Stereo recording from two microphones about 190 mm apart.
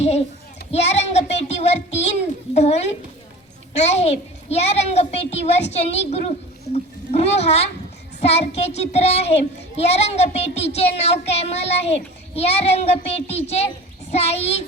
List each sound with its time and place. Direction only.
0.7 s speech: 35° left (ahead or behind)